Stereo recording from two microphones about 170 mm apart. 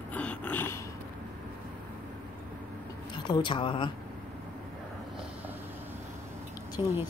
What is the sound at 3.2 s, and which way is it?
Speech, 25° left (ahead or behind).